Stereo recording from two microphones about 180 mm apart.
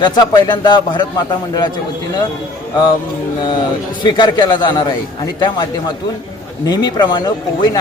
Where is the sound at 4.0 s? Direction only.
25° left (ahead or behind).